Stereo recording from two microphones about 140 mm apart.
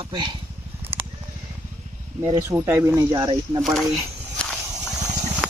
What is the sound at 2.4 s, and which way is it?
Speech, 20° right (ahead or behind).